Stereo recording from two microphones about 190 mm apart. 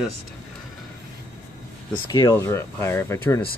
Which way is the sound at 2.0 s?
20° left (ahead or behind).